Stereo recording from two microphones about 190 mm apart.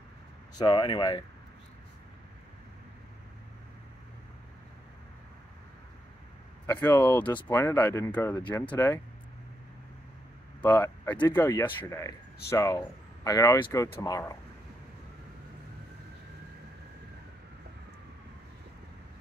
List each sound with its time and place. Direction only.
0.6 s speech: 25° left (ahead or behind)
6.6 s speech: 10° left (ahead or behind)
10.6 s speech: 10° left (ahead or behind)